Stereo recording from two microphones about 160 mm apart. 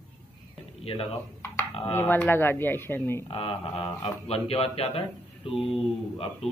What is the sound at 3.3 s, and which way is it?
Speech, 35° left (ahead or behind).